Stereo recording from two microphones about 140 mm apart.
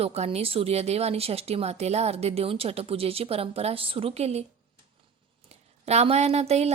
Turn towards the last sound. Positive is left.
turn(degrees=-50)  # may be behind; listen again after turning